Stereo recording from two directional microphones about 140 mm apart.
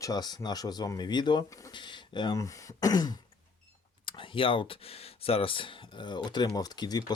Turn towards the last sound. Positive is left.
turn(degrees=30)  # may be behind; listen again after turning